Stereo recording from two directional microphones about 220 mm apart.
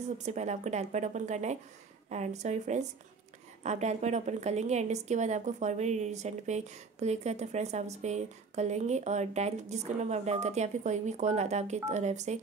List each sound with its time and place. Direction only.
0.2 s a woman's voice: 30° right (ahead or behind)